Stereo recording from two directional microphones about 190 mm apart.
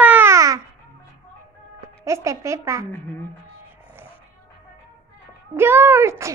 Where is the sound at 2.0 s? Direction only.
15° right (ahead or behind).